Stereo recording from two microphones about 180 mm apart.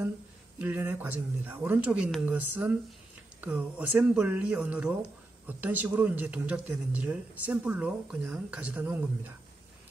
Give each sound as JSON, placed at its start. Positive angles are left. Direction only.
{"t": 0.6, "sound": "speech", "side_deg": -10}